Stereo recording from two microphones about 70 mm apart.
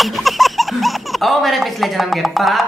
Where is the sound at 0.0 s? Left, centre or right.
Centre.